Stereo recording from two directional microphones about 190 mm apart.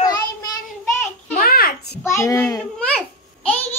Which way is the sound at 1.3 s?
50° left (ahead or behind).